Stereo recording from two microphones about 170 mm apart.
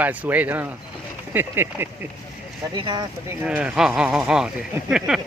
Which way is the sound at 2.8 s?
25° right (ahead or behind).